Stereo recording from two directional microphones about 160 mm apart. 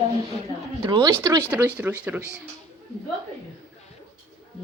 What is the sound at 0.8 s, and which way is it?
Speech, 25° right (ahead or behind).